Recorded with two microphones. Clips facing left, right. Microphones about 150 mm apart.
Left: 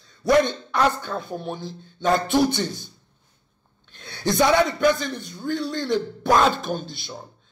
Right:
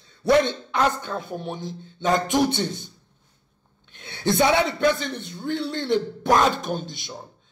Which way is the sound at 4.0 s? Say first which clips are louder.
Even; 25° right (ahead or behind).